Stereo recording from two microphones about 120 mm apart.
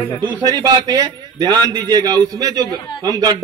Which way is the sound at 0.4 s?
30° right (ahead or behind).